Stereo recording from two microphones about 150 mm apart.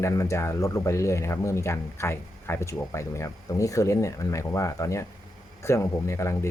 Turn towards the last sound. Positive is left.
turn(degrees=20)  # may be behind; listen again after turning